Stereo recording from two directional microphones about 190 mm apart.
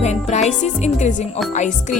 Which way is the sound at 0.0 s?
35° left (ahead or behind).